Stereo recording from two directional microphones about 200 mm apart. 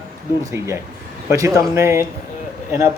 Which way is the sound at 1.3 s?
15° right (ahead or behind).